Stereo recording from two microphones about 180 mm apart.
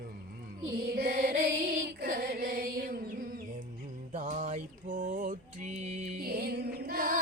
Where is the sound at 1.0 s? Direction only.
60° right (ahead or behind).